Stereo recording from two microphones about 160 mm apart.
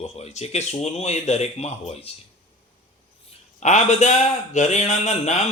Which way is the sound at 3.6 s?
45° left (ahead or behind).